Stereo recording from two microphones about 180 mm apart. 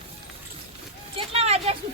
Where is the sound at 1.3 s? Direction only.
35° right (ahead or behind).